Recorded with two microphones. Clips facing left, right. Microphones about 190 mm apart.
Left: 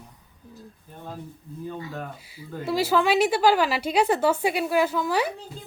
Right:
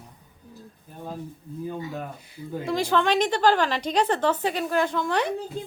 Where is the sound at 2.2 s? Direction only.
5° left (ahead or behind).